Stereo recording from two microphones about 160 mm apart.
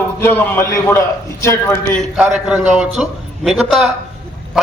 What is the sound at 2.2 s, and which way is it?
A man's voice, 5° right (ahead or behind).